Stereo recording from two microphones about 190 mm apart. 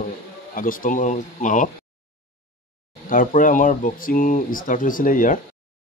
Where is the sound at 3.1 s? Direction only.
45° left (ahead or behind).